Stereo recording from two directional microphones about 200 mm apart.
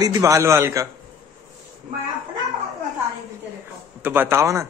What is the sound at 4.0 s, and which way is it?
Speech, 10° right (ahead or behind).